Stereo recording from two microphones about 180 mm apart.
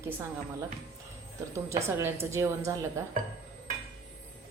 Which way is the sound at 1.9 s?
15° right (ahead or behind).